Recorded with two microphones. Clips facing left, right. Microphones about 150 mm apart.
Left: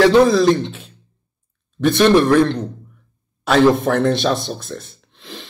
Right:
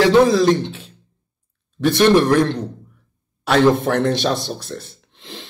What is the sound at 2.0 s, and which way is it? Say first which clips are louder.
Speech: left 1 dB; 20° right (ahead or behind).